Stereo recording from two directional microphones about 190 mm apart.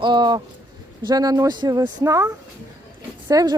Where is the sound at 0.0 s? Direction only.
25° right (ahead or behind).